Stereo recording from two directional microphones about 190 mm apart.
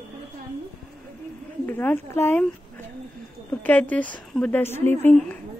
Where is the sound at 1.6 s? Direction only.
10° left (ahead or behind).